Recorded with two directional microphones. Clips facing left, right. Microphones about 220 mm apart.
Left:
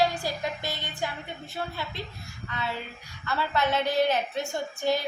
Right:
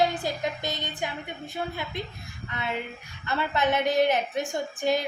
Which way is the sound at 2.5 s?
20° right (ahead or behind).